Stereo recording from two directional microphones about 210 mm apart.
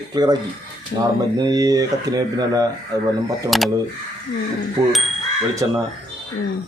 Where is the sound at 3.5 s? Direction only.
Centre (ahead or behind).